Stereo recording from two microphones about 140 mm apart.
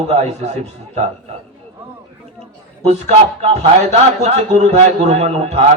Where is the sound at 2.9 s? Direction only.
55° right (ahead or behind).